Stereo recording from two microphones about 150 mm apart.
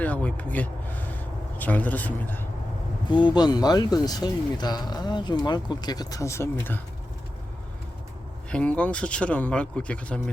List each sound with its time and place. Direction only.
0.0 s speech: 10° left (ahead or behind)
3.1 s speech: 30° left (ahead or behind)
8.4 s speech: 10° left (ahead or behind)